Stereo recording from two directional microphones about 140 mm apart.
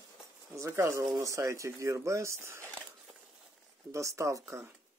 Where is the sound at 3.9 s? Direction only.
20° right (ahead or behind).